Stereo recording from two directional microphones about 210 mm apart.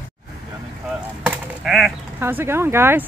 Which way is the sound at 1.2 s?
Centre (ahead or behind).